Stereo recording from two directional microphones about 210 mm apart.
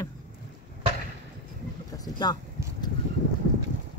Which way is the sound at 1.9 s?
20° left (ahead or behind).